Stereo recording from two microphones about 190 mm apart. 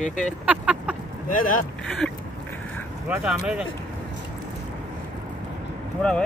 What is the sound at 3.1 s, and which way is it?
Speech, 5° right (ahead or behind).